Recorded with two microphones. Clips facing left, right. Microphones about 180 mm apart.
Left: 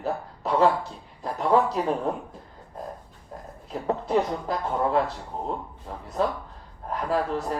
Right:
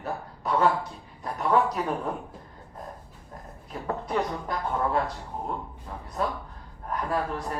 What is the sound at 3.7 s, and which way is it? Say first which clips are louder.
Speech: left 5 dB; 25° left (ahead or behind).